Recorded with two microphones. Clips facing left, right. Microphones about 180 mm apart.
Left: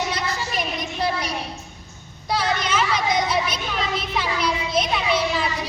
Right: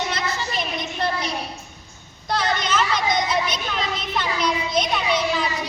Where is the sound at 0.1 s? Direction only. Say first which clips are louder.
Even; 10° left (ahead or behind).